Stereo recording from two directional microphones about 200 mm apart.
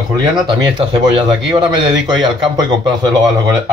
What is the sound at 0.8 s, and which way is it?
A man's voice, 25° right (ahead or behind).